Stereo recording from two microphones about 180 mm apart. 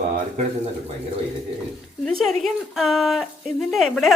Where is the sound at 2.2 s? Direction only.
Centre (ahead or behind).